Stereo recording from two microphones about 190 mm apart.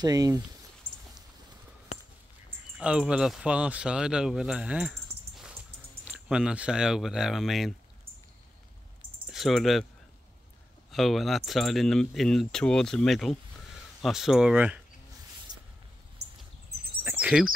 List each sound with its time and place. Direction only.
0.0 s speech: 20° right (ahead or behind)
2.8 s speech: 5° right (ahead or behind)
9.3 s speech: centre (ahead or behind)
10.9 s speech: centre (ahead or behind)
15.5 s a sound: 20° right (ahead or behind)
17.0 s a sound: 10° right (ahead or behind)